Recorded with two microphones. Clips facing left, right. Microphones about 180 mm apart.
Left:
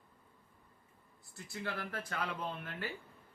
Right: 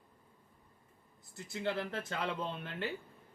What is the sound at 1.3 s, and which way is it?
Speech, 20° right (ahead or behind).